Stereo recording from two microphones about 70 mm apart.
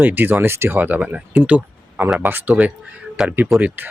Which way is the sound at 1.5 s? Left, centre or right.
Centre.